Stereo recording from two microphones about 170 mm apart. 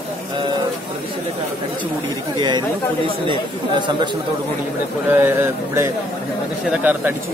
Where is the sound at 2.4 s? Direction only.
25° right (ahead or behind).